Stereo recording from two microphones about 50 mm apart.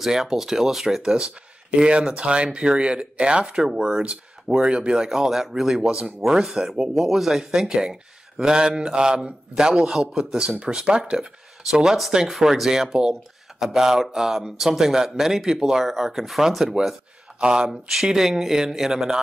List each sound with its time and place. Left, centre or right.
0.0 s speech: centre
17.4 s speech: centre
17.6 s speech: centre